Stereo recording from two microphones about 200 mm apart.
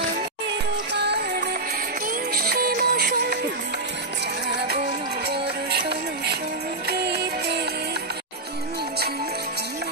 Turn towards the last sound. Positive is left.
turn(degrees=-55)  # may be behind; listen again after turning